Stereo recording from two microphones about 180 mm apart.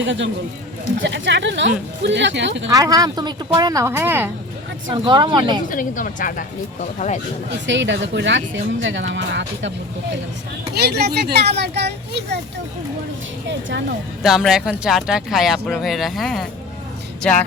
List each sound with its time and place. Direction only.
0.0 s speech: 90° right
2.6 s speech: 20° right (ahead or behind)
4.9 s speech: 25° right (ahead or behind)
5.6 s a woman's voice: 45° left (ahead or behind)
7.7 s speech: 90° right
10.8 s speech: 65° right (ahead or behind)
13.5 s speech: 80° right
14.2 s speech: centre (ahead or behind)